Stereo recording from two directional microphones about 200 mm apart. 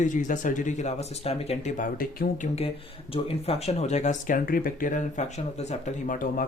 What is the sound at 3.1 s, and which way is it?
Speech, 30° left (ahead or behind).